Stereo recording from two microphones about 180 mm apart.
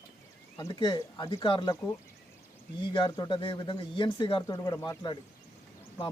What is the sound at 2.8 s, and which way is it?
Speech, 25° left (ahead or behind).